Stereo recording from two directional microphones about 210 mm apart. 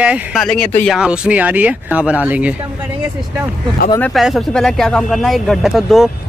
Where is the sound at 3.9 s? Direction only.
5° left (ahead or behind).